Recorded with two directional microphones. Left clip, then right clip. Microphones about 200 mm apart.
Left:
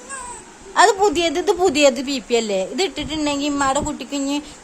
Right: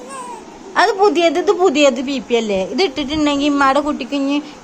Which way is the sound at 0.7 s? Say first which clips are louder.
Right 1 dB; 20° left (ahead or behind).